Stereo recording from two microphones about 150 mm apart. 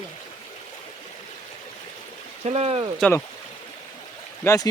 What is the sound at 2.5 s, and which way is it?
Speech, 45° right (ahead or behind).